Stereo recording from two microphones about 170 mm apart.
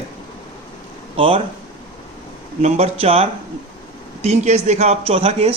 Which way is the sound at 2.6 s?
35° right (ahead or behind).